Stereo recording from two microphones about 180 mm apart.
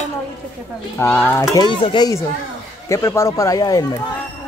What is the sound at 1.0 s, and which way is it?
Speech, 10° left (ahead or behind).